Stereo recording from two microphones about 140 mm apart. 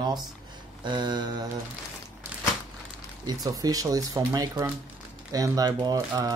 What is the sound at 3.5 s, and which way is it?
Speech, 25° right (ahead or behind).